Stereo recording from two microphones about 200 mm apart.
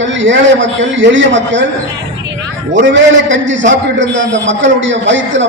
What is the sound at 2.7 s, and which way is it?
A man's voice, 65° right (ahead or behind).